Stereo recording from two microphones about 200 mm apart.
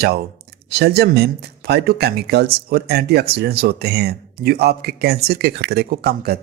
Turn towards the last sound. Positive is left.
turn(degrees=-50)  # may be behind; listen again after turning